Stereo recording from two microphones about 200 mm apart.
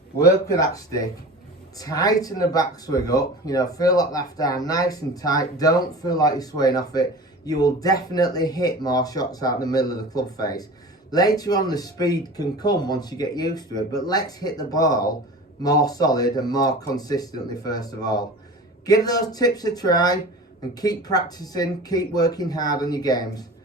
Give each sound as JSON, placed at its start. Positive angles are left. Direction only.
{"t": 0.2, "sound": "speech", "side_deg": 15}